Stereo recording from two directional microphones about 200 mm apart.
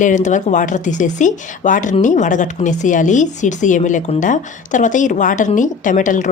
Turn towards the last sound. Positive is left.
turn(degrees=40)  # may be behind; listen again after turning